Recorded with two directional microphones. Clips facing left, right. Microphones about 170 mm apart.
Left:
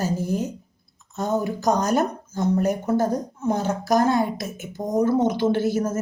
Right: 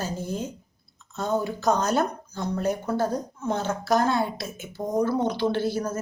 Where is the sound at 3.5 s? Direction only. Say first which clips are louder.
Left 3 dB; 40° left (ahead or behind).